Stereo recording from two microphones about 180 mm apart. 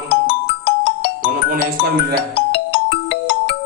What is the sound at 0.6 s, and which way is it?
Music, 65° left (ahead or behind).